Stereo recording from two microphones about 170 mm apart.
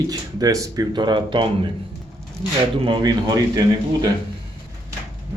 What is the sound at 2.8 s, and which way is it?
Speech, 25° right (ahead or behind).